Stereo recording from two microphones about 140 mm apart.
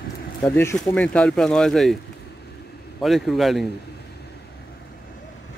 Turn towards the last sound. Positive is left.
turn(degrees=0)  # may be behind; listen again after turning